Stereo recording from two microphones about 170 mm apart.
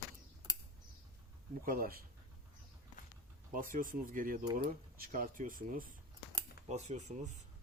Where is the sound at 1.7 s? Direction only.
60° right (ahead or behind).